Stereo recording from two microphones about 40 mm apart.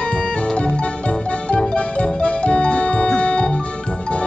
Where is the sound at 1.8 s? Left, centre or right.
Left.